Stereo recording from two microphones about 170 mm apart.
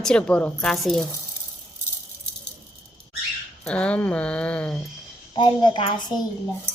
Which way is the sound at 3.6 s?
5° left (ahead or behind).